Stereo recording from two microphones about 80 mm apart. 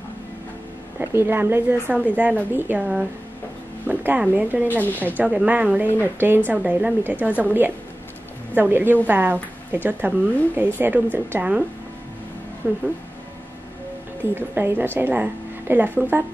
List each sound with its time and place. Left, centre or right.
1.1 s speech: right
3.8 s speech: centre
4.6 s speech: left
5.1 s speech: centre
8.5 s a woman's voice: right
12.6 s speech: right
14.3 s speech: right